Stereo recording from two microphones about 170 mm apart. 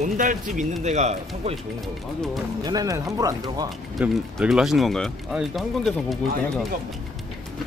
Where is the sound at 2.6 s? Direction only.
20° right (ahead or behind).